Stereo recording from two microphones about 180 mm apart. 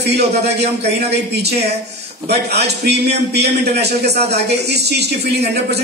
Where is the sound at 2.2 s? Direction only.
65° right (ahead or behind).